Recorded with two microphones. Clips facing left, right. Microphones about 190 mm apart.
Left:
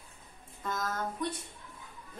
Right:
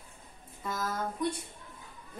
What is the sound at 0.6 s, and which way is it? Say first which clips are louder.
Speech: right 1 dB; 10° right (ahead or behind).